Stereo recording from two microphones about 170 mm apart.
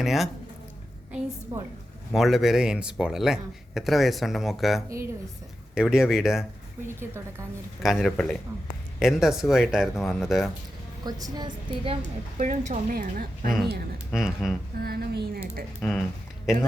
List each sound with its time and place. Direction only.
0.0 s speech: centre (ahead or behind)
1.5 s a woman's voice: 30° right (ahead or behind)
2.1 s speech: centre (ahead or behind)
6.8 s speech: 15° right (ahead or behind)
7.8 s speech: centre (ahead or behind)
11.0 s a woman's voice: 25° right (ahead or behind)
12.4 s a woman's voice: 45° right (ahead or behind)
14.1 s speech: centre (ahead or behind)
14.8 s speech: 65° right (ahead or behind)
15.8 s speech: centre (ahead or behind)